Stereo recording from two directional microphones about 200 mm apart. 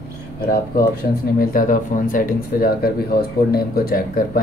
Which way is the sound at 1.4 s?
45° left (ahead or behind).